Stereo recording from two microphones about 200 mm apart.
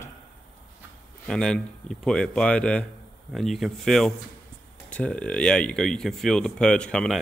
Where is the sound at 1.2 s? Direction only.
5° left (ahead or behind).